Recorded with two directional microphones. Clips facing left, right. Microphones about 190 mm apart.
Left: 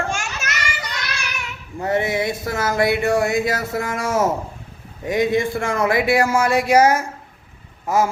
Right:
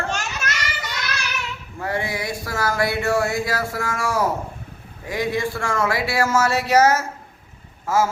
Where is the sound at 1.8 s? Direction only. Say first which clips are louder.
Left 6 dB; 20° left (ahead or behind).